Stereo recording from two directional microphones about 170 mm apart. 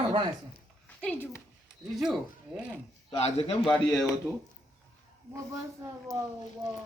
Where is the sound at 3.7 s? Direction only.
5° left (ahead or behind).